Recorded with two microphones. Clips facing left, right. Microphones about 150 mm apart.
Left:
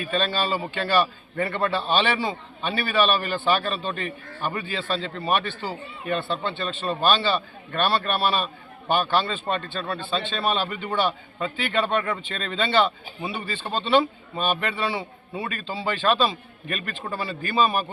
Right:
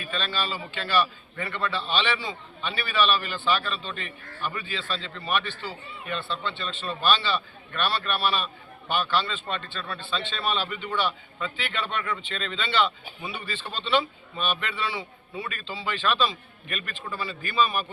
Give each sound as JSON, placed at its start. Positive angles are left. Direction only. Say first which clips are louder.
{"t": 0.1, "sound": "a man's voice", "louder": "left 6 dB", "side_deg": 45}
{"t": 13.2, "sound": "speech", "louder": "left 5 dB", "side_deg": 30}
{"t": 13.5, "sound": "a man's voice", "louder": "left 5 dB", "side_deg": 45}